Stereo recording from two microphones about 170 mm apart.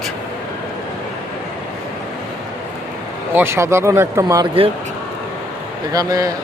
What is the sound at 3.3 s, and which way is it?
Speech, 15° right (ahead or behind).